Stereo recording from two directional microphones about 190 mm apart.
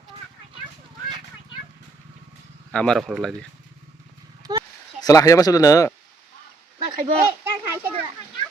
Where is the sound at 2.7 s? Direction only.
5° left (ahead or behind).